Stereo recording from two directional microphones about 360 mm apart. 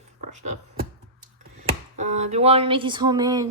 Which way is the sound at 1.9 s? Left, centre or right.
Centre.